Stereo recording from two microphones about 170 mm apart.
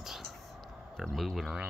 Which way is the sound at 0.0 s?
Centre (ahead or behind).